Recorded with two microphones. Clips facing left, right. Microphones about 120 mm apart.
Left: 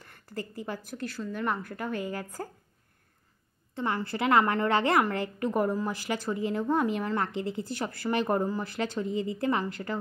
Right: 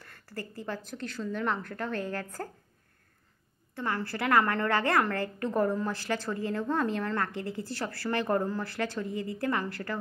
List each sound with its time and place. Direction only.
0.0 s a woman's voice: 20° left (ahead or behind)
3.7 s a woman's voice: 20° left (ahead or behind)